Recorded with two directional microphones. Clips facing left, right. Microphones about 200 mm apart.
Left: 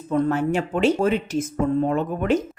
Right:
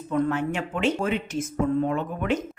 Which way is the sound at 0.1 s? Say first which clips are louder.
Left 4 dB; 40° left (ahead or behind).